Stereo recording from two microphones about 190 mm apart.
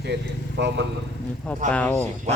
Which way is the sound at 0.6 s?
65° right (ahead or behind).